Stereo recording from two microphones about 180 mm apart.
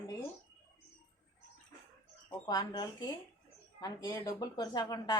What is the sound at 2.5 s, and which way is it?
Speech, 20° left (ahead or behind).